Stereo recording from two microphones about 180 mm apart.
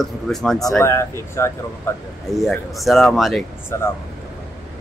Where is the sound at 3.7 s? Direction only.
15° left (ahead or behind).